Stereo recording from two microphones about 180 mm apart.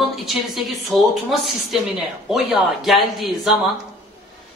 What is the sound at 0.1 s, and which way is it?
Speech, centre (ahead or behind).